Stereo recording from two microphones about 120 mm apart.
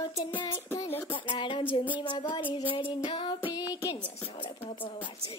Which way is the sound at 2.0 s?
40° left (ahead or behind).